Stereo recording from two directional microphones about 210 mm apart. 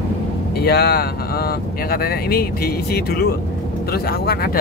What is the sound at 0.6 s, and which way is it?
Speech, 50° left (ahead or behind).